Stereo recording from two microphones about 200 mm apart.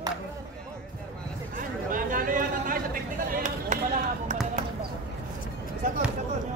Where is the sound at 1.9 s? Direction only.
45° right (ahead or behind).